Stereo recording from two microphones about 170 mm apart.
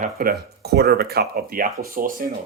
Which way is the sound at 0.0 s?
60° right (ahead or behind).